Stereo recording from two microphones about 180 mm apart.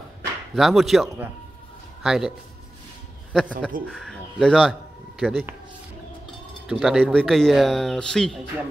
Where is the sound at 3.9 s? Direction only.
Centre (ahead or behind).